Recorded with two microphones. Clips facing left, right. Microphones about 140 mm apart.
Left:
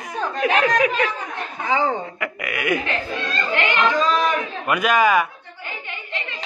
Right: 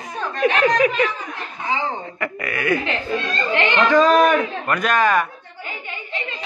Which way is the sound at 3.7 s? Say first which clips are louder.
Right 6 dB; 60° right (ahead or behind).